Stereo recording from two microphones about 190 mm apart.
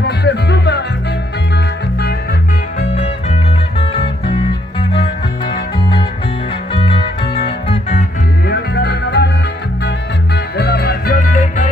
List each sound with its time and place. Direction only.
0.0 s music: 60° left (ahead or behind)
3.9 s music: 25° left (ahead or behind)
7.4 s music: 35° left (ahead or behind)
8.5 s music: 60° left (ahead or behind)
10.6 s music: 55° left (ahead or behind); by 11.7 s 40° left (ahead or behind)